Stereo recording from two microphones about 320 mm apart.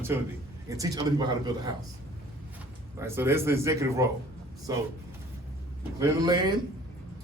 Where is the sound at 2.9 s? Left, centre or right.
Centre.